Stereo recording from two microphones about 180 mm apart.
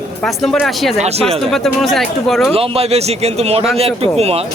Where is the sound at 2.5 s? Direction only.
30° right (ahead or behind).